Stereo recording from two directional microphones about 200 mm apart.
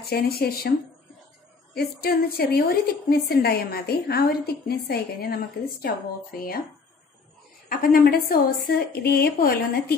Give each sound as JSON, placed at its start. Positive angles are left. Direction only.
{"t": 0.0, "sound": "a woman's voice", "side_deg": 50}
{"t": 7.7, "sound": "a woman's voice", "side_deg": 45}